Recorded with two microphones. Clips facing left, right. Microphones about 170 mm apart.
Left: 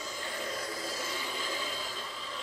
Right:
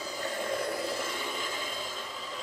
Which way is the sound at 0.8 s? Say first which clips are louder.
Right 4 dB; 55° right (ahead or behind).